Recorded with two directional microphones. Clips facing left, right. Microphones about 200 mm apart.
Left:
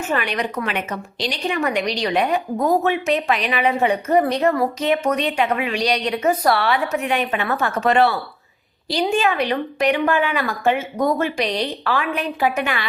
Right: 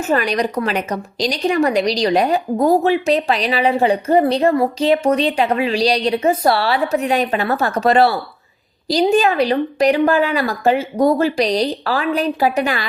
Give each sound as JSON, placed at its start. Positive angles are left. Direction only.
{"t": 0.0, "sound": "a woman's voice", "side_deg": -40}